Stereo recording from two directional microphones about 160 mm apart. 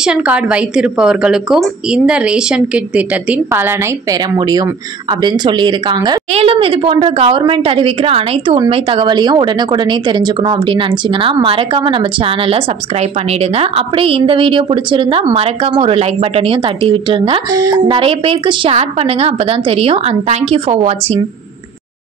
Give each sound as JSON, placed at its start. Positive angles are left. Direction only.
{"t": 0.0, "sound": "a woman's voice", "side_deg": -5}
{"t": 4.4, "sound": "speech", "side_deg": -25}
{"t": 17.6, "sound": "speech", "side_deg": -20}
{"t": 17.9, "sound": "speech", "side_deg": -35}